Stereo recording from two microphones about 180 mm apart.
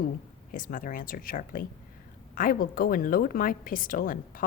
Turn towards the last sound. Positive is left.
turn(degrees=50)  # may be behind; listen again after turning